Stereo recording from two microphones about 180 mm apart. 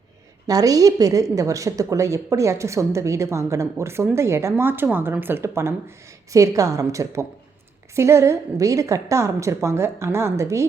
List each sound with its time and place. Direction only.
0.4 s speech: 20° right (ahead or behind)